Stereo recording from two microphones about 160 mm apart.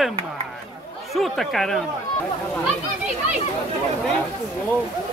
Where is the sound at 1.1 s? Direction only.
Centre (ahead or behind).